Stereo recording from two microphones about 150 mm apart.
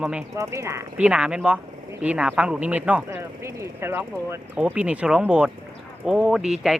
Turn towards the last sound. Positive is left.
turn(degrees=-5)  # may be behind; listen again after turning